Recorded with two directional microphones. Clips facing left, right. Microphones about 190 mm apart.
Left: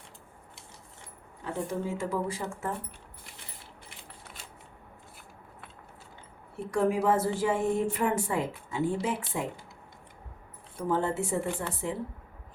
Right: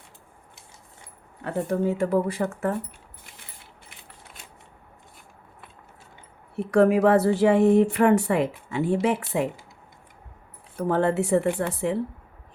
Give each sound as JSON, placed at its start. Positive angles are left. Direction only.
{"t": 1.5, "sound": "speech", "side_deg": -60}
{"t": 6.6, "sound": "a woman's voice", "side_deg": -65}
{"t": 10.8, "sound": "a woman's voice", "side_deg": -70}